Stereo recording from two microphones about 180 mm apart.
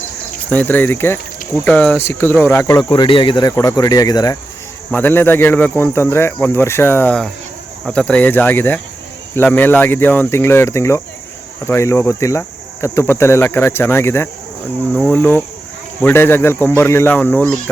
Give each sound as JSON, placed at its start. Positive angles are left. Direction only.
{"t": 0.5, "sound": "speech", "side_deg": 10}
{"t": 2.9, "sound": "speech", "side_deg": 25}
{"t": 4.9, "sound": "speech", "side_deg": 10}